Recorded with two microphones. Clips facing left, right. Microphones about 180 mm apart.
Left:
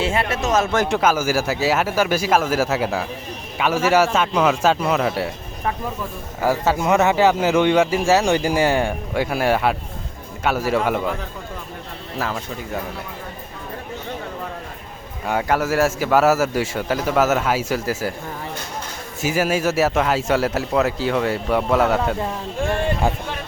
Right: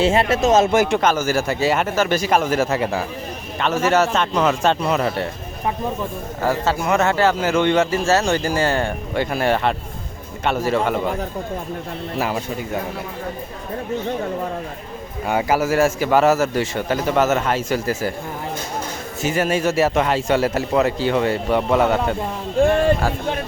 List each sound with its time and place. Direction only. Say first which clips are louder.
0.0 s speech: right 5 dB; 25° right (ahead or behind)
0.9 s a man's voice: even; 5° left (ahead or behind)
6.4 s a man's voice: left 1 dB; 10° left (ahead or behind)
15.3 s a man's voice: right 1 dB; 5° right (ahead or behind)
19.2 s a man's voice: even; 5° left (ahead or behind)